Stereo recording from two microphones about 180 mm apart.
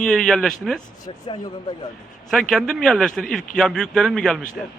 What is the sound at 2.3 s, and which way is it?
A man's voice, centre (ahead or behind).